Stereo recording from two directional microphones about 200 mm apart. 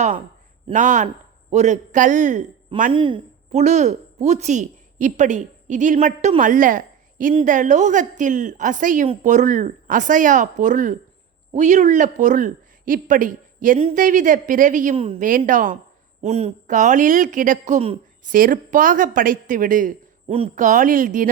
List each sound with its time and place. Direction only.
0.7 s a woman's voice: 40° right (ahead or behind)
2.9 s a woman's voice: 25° right (ahead or behind); by 13.7 s 40° right (ahead or behind)
13.7 s speech: 30° right (ahead or behind)
14.0 s a woman's voice: 40° right (ahead or behind)
18.3 s a woman's voice: 45° right (ahead or behind)